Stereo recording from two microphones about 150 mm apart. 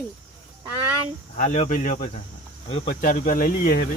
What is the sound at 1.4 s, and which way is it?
Speech, 50° left (ahead or behind).